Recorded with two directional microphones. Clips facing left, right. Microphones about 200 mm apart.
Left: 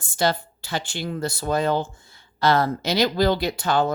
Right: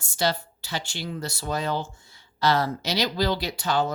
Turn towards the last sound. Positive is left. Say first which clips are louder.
# left 4 dB
turn(degrees=55)  # may be behind; listen again after turning